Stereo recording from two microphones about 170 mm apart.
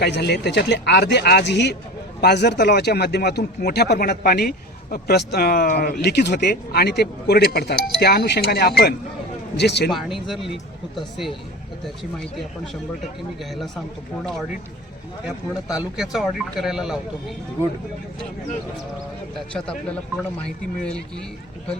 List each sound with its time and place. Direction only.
0.0 s speech: 75° left (ahead or behind)
9.9 s speech: centre (ahead or behind)
15.7 s speech: 5° right (ahead or behind)